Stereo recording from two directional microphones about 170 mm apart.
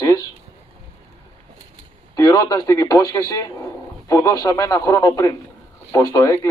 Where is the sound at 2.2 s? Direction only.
20° left (ahead or behind).